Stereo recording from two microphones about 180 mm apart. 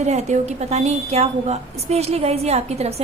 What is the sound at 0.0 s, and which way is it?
A woman's voice, 40° right (ahead or behind).